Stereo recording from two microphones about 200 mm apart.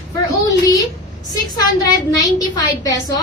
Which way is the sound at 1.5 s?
20° left (ahead or behind).